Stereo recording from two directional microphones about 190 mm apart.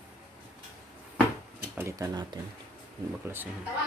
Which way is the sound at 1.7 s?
15° right (ahead or behind).